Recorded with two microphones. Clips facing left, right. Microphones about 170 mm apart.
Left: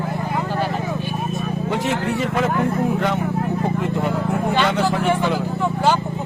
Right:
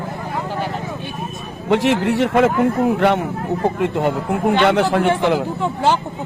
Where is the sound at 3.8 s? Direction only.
70° right (ahead or behind).